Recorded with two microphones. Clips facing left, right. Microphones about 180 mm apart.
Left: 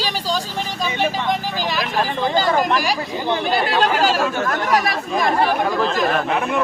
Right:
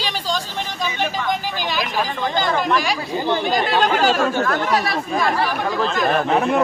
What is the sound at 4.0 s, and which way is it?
Speech, 10° left (ahead or behind).